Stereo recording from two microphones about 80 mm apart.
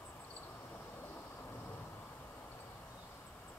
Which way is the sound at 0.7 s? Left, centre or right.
Left.